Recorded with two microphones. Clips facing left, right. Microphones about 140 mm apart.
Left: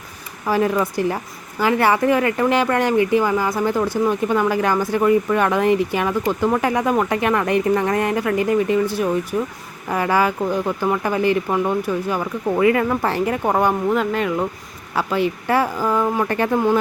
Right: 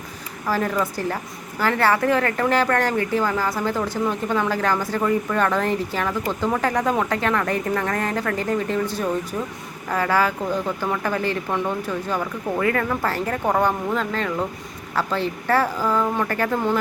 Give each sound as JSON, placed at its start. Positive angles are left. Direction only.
{"t": 0.4, "sound": "a woman's voice", "side_deg": 15}